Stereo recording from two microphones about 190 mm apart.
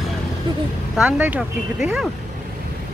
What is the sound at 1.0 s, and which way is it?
Speech, 10° right (ahead or behind).